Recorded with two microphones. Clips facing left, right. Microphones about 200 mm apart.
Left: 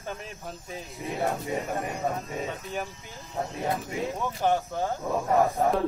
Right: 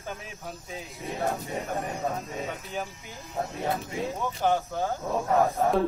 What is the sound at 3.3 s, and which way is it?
Speech, centre (ahead or behind).